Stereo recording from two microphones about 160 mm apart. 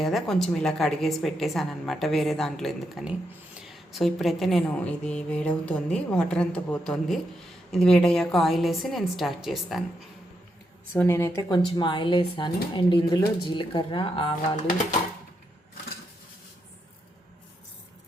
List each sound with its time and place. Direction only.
0.0 s a woman's voice: centre (ahead or behind)
10.9 s speech: 15° left (ahead or behind)
11.6 s speech: 30° left (ahead or behind)